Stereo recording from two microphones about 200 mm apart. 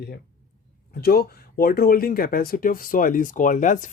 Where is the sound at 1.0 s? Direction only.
50° left (ahead or behind).